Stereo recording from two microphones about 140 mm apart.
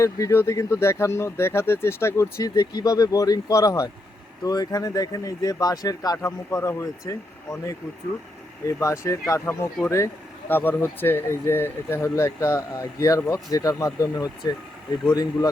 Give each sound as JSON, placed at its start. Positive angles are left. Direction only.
{"t": 0.0, "sound": "speech", "side_deg": 20}